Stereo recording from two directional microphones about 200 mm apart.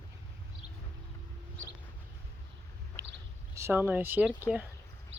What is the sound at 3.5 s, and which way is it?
Speech, 10° right (ahead or behind).